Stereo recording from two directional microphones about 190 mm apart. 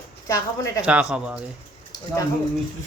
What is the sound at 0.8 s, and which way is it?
Speech, 5° right (ahead or behind).